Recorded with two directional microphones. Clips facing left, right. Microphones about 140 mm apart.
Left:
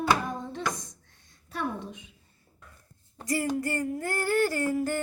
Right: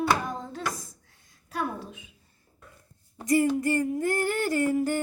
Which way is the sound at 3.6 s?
20° right (ahead or behind).